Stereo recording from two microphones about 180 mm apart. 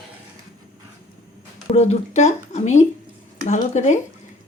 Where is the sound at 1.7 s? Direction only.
40° left (ahead or behind).